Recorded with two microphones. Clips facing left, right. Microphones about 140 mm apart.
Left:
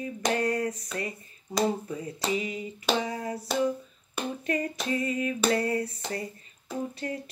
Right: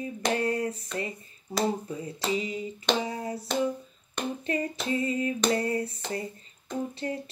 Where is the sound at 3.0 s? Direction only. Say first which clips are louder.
Even; 30° right (ahead or behind).